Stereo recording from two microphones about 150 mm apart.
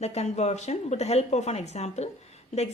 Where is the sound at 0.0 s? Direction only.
45° left (ahead or behind).